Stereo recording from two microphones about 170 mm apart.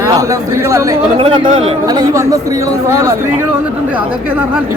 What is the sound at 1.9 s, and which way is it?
Speech, 20° right (ahead or behind).